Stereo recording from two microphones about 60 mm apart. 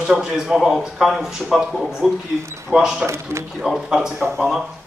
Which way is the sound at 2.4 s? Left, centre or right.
Right.